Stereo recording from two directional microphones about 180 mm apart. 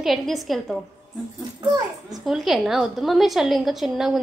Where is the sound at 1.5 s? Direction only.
20° right (ahead or behind).